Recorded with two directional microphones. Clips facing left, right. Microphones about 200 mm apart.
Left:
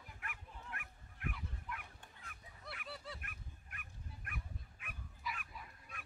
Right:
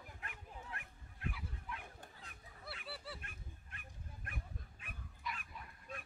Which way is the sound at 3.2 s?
30° right (ahead or behind).